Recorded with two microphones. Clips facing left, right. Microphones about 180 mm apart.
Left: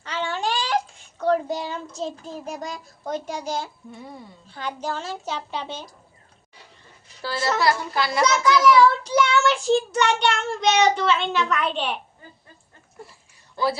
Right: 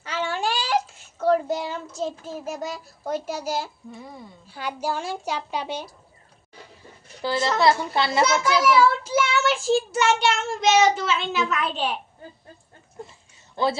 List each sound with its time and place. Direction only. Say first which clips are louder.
0.0 s a child's voice: even; 10° right (ahead or behind)
7.6 s a child's voice: right 4 dB; 25° right (ahead or behind)
8.6 s child singing: left 3 dB; 5° right (ahead or behind)